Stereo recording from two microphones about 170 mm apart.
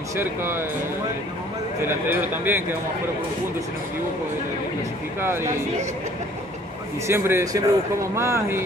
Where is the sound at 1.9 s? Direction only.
10° right (ahead or behind).